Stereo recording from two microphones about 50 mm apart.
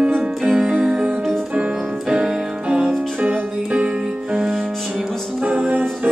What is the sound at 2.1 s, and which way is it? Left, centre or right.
Music, centre.